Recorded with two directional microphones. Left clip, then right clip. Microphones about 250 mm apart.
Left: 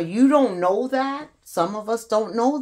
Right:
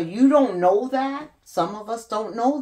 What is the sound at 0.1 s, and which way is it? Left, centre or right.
Speech, left.